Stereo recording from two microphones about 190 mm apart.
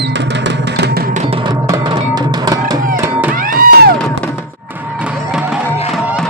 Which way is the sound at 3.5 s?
50° right (ahead or behind).